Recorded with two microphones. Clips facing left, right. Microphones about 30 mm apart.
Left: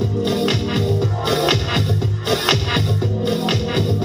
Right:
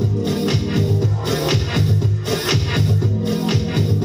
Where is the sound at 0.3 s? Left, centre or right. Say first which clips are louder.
Left 2 dB; left.